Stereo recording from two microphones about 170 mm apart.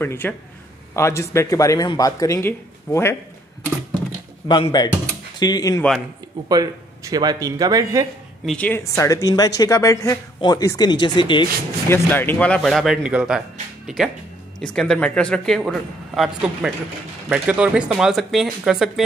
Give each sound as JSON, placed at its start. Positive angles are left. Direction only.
{"t": 0.0, "sound": "a man's voice", "side_deg": 10}
{"t": 4.5, "sound": "speech", "side_deg": 25}
{"t": 5.8, "sound": "speech", "side_deg": 0}
{"t": 6.5, "sound": "a man's voice", "side_deg": -20}
{"t": 8.5, "sound": "a man's voice", "side_deg": 10}
{"t": 11.9, "sound": "speech", "side_deg": 10}